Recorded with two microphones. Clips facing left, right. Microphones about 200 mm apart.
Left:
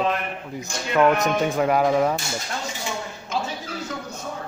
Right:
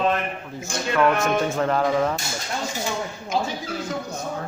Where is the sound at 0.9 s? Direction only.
20° left (ahead or behind).